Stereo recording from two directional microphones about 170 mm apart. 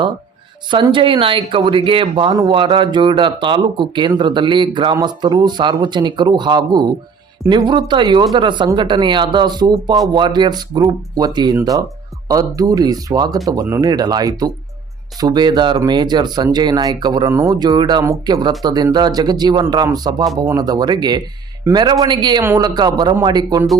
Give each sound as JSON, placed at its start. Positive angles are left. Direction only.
{"t": 0.7, "sound": "speech", "side_deg": -30}